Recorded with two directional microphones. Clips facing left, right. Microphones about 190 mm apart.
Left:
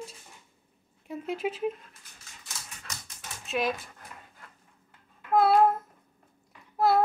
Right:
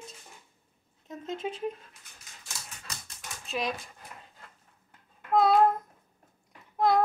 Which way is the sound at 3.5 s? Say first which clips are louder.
Left 3 dB; centre (ahead or behind).